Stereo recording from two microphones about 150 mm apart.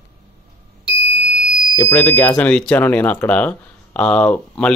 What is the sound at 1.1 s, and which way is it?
Fire alarm, 5° right (ahead or behind).